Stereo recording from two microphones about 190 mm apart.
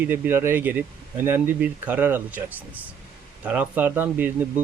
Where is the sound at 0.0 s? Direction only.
10° right (ahead or behind).